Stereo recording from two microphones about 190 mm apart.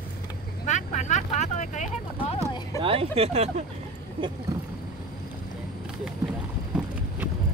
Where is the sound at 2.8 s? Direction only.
30° right (ahead or behind).